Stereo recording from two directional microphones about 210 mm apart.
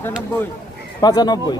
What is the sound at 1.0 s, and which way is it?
Speech, 20° left (ahead or behind).